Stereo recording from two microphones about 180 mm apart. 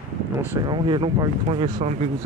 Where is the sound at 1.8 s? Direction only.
40° right (ahead or behind).